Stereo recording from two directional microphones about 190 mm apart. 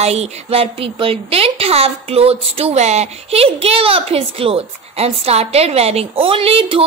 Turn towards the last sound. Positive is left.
turn(degrees=-30)  # may be behind; listen again after turning